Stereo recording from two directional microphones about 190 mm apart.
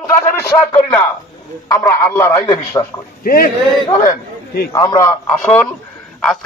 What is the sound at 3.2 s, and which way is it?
Speech, 50° left (ahead or behind).